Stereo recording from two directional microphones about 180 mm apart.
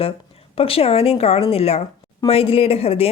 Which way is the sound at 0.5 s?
30° left (ahead or behind).